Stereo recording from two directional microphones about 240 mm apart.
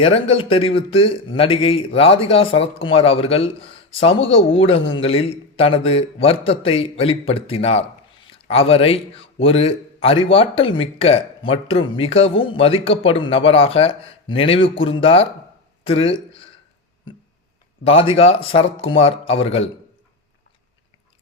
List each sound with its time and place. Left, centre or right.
0.0 s speech: left
15.8 s a sound: left
17.8 s speech: left